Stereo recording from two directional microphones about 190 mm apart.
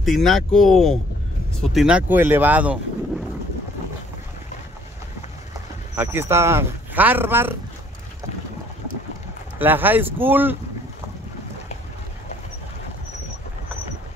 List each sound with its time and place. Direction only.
0.0 s speech: centre (ahead or behind)
5.9 s speech: 15° right (ahead or behind)
9.6 s speech: 10° right (ahead or behind)